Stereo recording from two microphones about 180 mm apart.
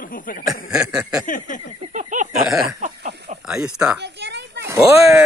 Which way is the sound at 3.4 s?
5° right (ahead or behind).